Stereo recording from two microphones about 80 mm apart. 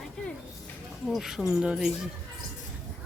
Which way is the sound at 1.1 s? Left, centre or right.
Centre.